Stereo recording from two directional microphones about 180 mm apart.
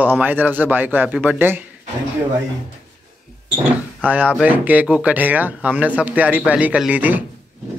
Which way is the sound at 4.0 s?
10° right (ahead or behind).